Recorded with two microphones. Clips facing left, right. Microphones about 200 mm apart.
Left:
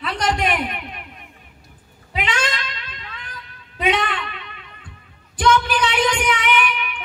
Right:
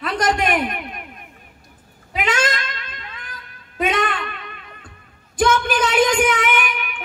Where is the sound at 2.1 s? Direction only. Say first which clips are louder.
Right 3 dB; 45° right (ahead or behind).